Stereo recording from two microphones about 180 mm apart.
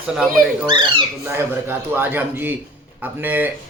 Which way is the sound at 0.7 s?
25° right (ahead or behind).